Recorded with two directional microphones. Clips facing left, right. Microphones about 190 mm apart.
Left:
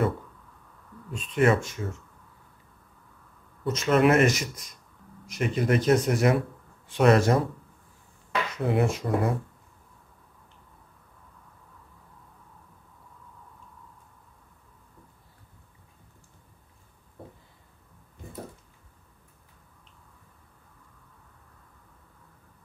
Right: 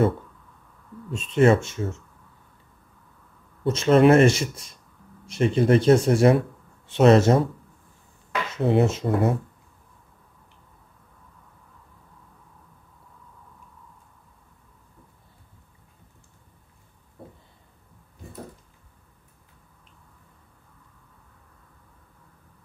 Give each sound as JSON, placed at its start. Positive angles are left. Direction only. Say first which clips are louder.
{"t": 1.1, "sound": "speech", "louder": "right 5 dB", "side_deg": -25}
{"t": 3.6, "sound": "speech", "louder": "right 5 dB", "side_deg": -30}
{"t": 8.5, "sound": "speech", "louder": "right 5 dB", "side_deg": -25}